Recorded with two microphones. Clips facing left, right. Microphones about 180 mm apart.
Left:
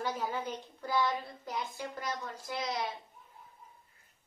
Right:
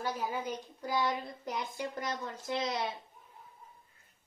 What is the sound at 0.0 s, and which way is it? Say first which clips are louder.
Speech: even; 10° right (ahead or behind).